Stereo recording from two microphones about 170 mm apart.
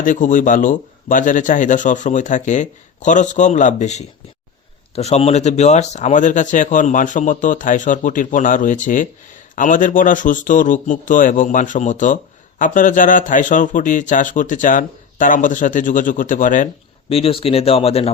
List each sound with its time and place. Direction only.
0.0 s speech: 50° left (ahead or behind)
17.1 s speech: 35° left (ahead or behind)